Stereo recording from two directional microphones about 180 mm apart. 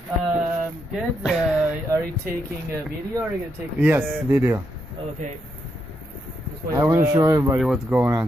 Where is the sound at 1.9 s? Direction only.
15° right (ahead or behind).